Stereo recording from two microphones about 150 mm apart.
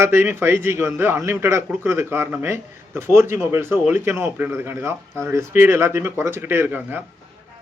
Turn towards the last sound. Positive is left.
turn(degrees=-15)  # may be behind; listen again after turning